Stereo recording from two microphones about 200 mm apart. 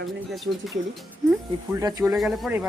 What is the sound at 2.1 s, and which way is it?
Speech, centre (ahead or behind).